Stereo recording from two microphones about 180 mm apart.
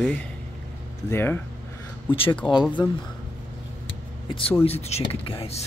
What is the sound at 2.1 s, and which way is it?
Speech, 30° left (ahead or behind).